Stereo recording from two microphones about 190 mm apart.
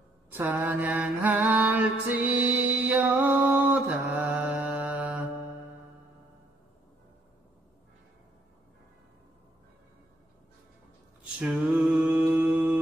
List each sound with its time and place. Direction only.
0.3 s mantra: 10° right (ahead or behind)
11.3 s mantra: 5° right (ahead or behind)